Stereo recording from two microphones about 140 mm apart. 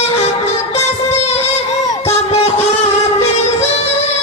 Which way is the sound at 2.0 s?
45° left (ahead or behind).